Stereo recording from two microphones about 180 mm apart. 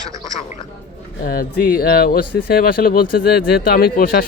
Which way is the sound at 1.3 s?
55° left (ahead or behind).